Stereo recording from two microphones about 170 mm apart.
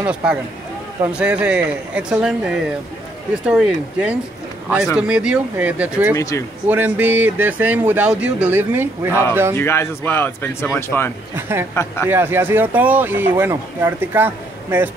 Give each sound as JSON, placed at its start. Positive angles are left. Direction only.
{"t": 0.0, "sound": "speech", "side_deg": -5}
{"t": 6.1, "sound": "speech", "side_deg": 20}
{"t": 6.7, "sound": "speech", "side_deg": -10}
{"t": 9.6, "sound": "speech", "side_deg": 15}
{"t": 11.3, "sound": "speech", "side_deg": -15}
{"t": 11.7, "sound": "speech", "side_deg": 15}
{"t": 12.1, "sound": "speech", "side_deg": -15}